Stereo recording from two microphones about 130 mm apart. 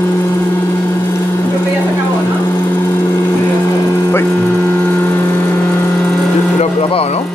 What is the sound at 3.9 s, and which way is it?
Vehicle, 20° left (ahead or behind).